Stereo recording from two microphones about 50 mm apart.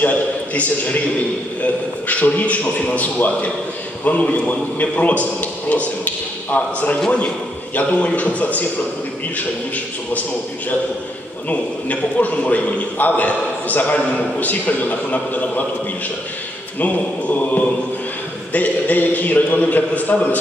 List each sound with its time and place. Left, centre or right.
0.0 s a man's voice: left
11.4 s a man's voice: left
16.8 s a man's voice: left